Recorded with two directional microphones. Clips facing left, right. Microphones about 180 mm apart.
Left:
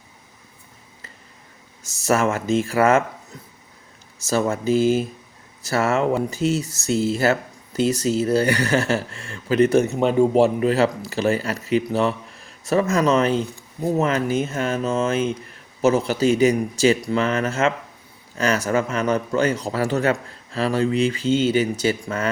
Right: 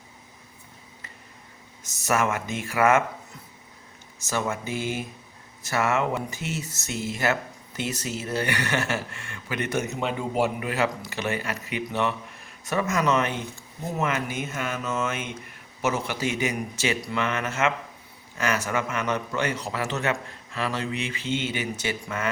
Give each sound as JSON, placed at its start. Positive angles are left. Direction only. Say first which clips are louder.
{"t": 2.0, "sound": "speech", "louder": "left 6 dB", "side_deg": 30}
{"t": 4.3, "sound": "speech", "louder": "left 8 dB", "side_deg": 30}